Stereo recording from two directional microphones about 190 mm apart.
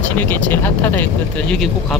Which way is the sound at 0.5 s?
10° left (ahead or behind).